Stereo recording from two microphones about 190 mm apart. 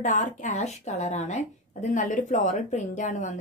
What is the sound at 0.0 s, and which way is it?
Speech, 40° left (ahead or behind).